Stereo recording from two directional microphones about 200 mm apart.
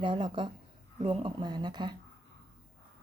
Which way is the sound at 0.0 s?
25° right (ahead or behind).